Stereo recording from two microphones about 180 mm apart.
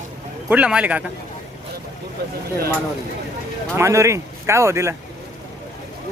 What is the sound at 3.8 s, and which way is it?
Speech, 15° right (ahead or behind).